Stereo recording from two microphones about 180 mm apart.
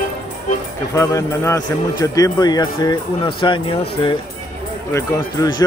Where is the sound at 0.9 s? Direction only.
20° left (ahead or behind).